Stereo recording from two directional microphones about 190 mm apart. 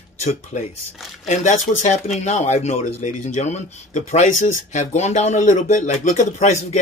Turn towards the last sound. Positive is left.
turn(degrees=35)  # may be behind; listen again after turning